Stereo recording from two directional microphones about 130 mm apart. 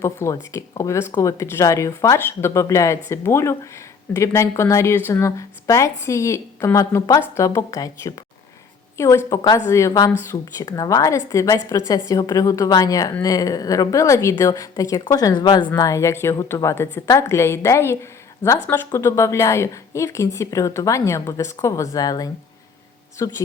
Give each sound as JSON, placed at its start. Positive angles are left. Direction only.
{"t": 0.0, "sound": "speech", "side_deg": 20}